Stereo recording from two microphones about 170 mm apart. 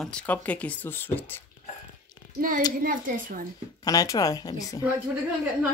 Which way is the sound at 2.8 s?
55° right (ahead or behind).